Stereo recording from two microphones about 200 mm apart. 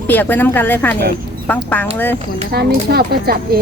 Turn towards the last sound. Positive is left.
turn(degrees=-50)  # may be behind; listen again after turning